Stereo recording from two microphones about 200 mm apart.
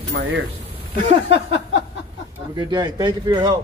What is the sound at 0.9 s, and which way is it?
Speech, 25° right (ahead or behind).